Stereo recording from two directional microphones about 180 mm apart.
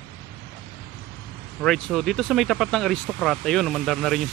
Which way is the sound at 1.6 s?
5° left (ahead or behind).